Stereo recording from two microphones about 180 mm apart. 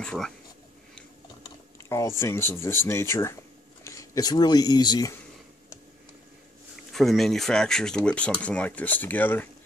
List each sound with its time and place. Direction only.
0.0 s speech: 5° left (ahead or behind)
1.4 s speech: 15° left (ahead or behind)
6.9 s speech: centre (ahead or behind)